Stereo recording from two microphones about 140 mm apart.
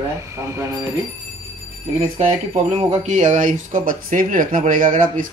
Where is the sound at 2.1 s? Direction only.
55° right (ahead or behind).